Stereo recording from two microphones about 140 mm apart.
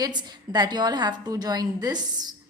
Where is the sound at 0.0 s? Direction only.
30° right (ahead or behind).